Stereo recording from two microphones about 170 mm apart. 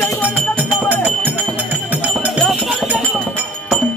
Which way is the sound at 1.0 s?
10° right (ahead or behind).